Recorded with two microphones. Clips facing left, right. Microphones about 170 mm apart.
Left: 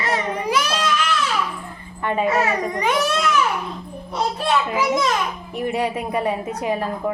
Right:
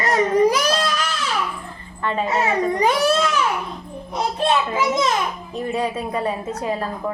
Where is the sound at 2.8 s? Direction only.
35° right (ahead or behind).